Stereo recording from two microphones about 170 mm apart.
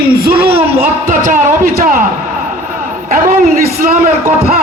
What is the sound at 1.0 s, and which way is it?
Speech, 45° right (ahead or behind).